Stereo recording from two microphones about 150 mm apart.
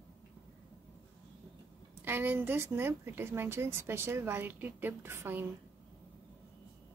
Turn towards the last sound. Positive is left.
turn(degrees=-15)  # may be behind; listen again after turning